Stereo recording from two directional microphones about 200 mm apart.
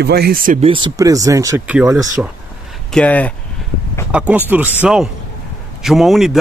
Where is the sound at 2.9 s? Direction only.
5° left (ahead or behind).